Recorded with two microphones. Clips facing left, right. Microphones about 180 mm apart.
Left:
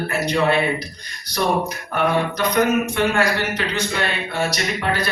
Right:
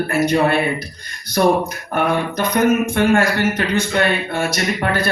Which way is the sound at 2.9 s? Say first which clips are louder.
Right 4 dB; 50° right (ahead or behind).